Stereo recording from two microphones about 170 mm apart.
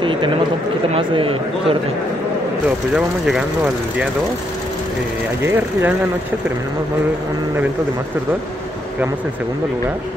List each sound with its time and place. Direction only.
0.0 s run: 30° right (ahead or behind)
0.9 s a man's voice: 35° right (ahead or behind)
5.4 s speech: 15° right (ahead or behind)